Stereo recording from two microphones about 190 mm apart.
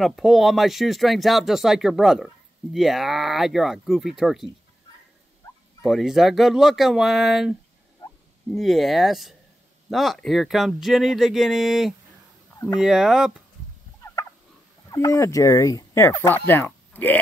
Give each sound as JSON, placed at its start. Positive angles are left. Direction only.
{"t": 0.0, "sound": "speech", "side_deg": 0}
{"t": 5.8, "sound": "speech", "side_deg": 0}
{"t": 14.9, "sound": "speech", "side_deg": 20}